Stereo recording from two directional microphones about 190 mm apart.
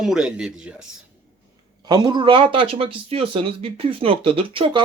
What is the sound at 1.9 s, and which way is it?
Speech, 20° right (ahead or behind).